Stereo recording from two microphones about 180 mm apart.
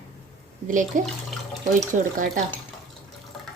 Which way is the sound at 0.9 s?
45° right (ahead or behind).